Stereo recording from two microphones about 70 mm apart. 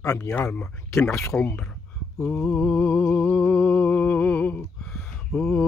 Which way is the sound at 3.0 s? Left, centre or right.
Centre.